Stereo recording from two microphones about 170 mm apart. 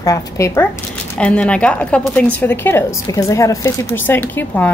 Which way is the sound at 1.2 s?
5° left (ahead or behind).